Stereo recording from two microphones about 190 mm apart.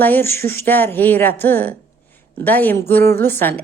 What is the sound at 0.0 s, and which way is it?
Speech, 10° left (ahead or behind).